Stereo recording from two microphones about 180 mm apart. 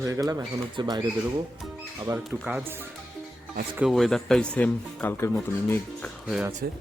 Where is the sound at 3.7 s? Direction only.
5° right (ahead or behind).